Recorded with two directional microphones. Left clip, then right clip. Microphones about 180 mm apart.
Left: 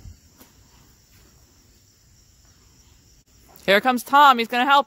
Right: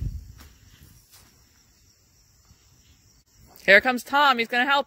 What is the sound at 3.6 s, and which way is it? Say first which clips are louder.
Speech: right 1 dB; 20° left (ahead or behind).